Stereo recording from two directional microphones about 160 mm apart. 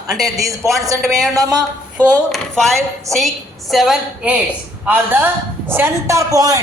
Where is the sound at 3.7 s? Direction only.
Centre (ahead or behind).